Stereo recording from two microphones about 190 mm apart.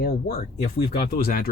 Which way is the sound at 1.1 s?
50° left (ahead or behind).